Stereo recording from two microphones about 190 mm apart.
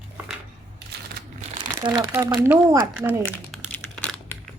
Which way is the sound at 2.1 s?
10° right (ahead or behind).